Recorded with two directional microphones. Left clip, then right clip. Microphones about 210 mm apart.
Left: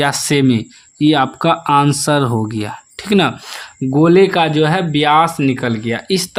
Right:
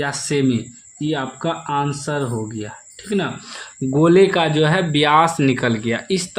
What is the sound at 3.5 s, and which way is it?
Speech, 20° left (ahead or behind).